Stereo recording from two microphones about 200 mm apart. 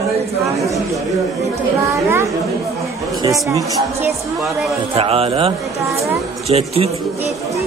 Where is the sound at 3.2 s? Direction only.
15° right (ahead or behind).